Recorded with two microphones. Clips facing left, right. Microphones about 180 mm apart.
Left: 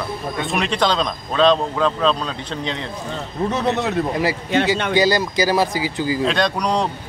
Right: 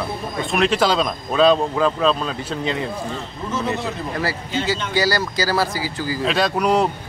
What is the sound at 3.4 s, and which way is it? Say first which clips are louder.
Speech: left 4 dB; 70° left (ahead or behind).